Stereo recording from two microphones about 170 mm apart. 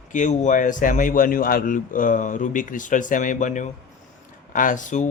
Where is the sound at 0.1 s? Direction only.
45° left (ahead or behind).